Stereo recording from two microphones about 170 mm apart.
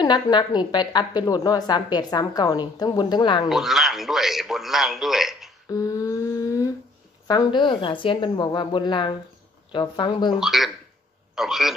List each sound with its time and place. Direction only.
0.0 s a woman's voice: 25° left (ahead or behind)
3.4 s speech: centre (ahead or behind)
5.7 s humming: 20° left (ahead or behind)
7.2 s a woman's voice: 25° left (ahead or behind)
10.4 s speech: centre (ahead or behind)